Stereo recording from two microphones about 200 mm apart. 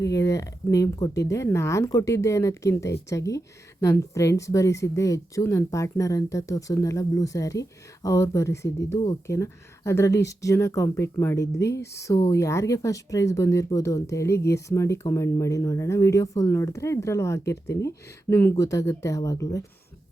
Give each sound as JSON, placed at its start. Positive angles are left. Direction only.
{"t": 0.0, "sound": "a woman's voice", "side_deg": 15}